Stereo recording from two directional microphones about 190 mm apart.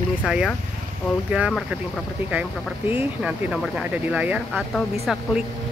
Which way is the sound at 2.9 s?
5° right (ahead or behind).